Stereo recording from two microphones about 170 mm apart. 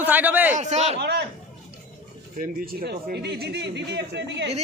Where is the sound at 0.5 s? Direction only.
45° right (ahead or behind).